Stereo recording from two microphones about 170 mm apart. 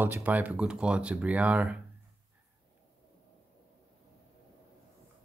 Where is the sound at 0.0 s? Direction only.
10° right (ahead or behind).